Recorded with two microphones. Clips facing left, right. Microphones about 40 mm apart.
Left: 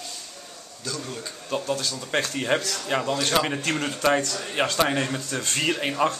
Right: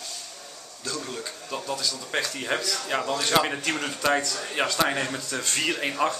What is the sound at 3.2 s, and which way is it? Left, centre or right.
Speech, centre.